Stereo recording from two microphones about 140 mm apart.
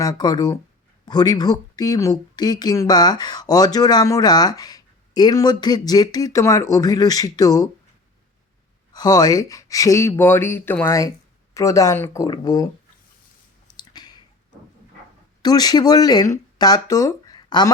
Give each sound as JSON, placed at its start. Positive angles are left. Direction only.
{"t": 0.0, "sound": "speech", "side_deg": 30}
{"t": 8.9, "sound": "speech", "side_deg": 30}
{"t": 13.7, "sound": "clicking", "side_deg": 30}
{"t": 15.4, "sound": "speech", "side_deg": 30}